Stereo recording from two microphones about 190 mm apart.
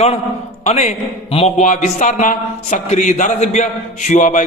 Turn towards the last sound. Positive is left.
turn(degrees=40)  # may be behind; listen again after turning